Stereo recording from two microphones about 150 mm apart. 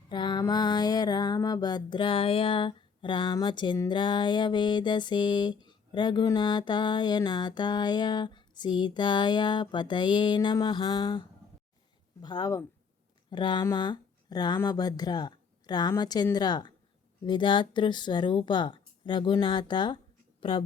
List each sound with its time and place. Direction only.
0.1 s mantra: 30° left (ahead or behind)
12.2 s speech: 25° left (ahead or behind)
17.2 s mantra: 30° left (ahead or behind)
20.4 s speech: 35° left (ahead or behind)